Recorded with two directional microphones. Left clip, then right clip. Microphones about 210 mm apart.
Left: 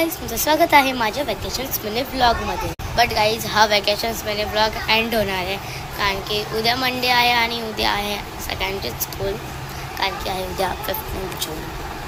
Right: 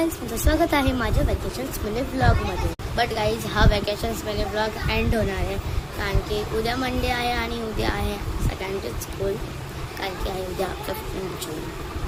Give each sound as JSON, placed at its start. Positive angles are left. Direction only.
{"t": 0.0, "sound": "a woman's voice", "side_deg": -15}
{"t": 10.0, "sound": "a woman's voice", "side_deg": -10}